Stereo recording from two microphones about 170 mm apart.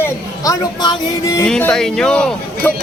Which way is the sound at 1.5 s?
5° left (ahead or behind).